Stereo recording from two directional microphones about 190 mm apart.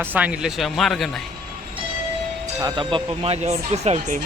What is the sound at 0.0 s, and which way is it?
Speech, 10° right (ahead or behind).